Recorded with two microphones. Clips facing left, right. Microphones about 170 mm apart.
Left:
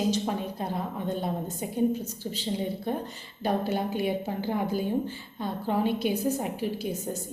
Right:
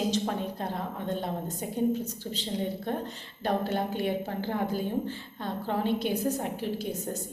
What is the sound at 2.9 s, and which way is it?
A woman's voice, 10° left (ahead or behind).